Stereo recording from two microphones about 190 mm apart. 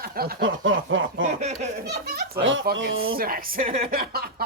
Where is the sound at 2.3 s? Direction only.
75° right (ahead or behind); by 3.1 s 90° right.